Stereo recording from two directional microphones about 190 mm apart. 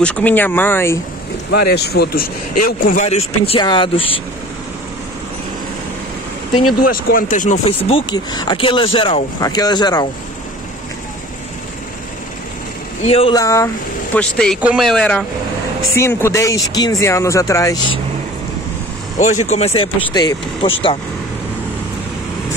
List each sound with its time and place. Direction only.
0.0 s speech: 5° left (ahead or behind)
1.5 s speech: 60° left (ahead or behind)
3.1 s speech: 30° left (ahead or behind)
6.8 s speech: 50° left (ahead or behind); by 10.0 s 20° left (ahead or behind)
13.0 s speech: 30° left (ahead or behind)
13.3 s speech: 15° left (ahead or behind)
14.1 s speech: 5° left (ahead or behind)
19.1 s speech: 40° left (ahead or behind)